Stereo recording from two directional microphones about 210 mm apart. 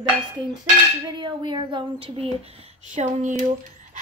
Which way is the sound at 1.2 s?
20° right (ahead or behind).